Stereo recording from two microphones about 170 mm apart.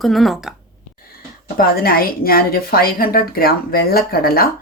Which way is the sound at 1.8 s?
60° left (ahead or behind).